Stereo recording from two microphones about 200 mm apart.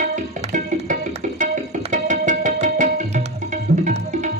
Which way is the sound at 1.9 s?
40° right (ahead or behind).